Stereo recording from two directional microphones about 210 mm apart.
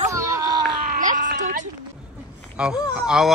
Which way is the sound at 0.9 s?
40° right (ahead or behind).